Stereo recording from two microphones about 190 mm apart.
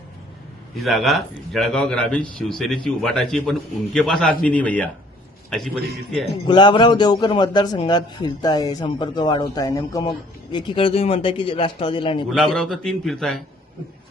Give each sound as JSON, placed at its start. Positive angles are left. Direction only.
{"t": 0.8, "sound": "a man's voice", "side_deg": 0}
{"t": 6.5, "sound": "a man's voice", "side_deg": 25}
{"t": 12.3, "sound": "a man's voice", "side_deg": 5}